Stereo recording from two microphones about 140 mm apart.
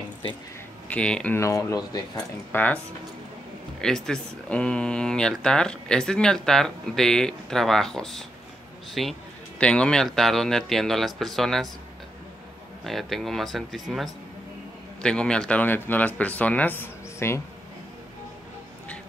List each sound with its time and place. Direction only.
0.8 s speech: 10° left (ahead or behind)
1.4 s speech: 25° left (ahead or behind)
2.1 s speech: 10° left (ahead or behind)
3.8 s speech: 5° left (ahead or behind)
12.8 s speech: centre (ahead or behind)